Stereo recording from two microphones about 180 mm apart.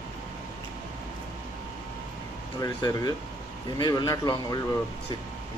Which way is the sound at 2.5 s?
20° left (ahead or behind).